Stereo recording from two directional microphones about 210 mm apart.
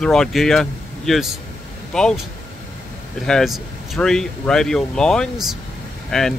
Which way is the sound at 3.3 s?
Centre (ahead or behind).